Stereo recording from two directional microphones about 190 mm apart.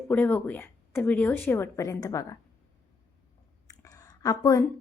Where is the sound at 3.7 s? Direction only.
20° left (ahead or behind).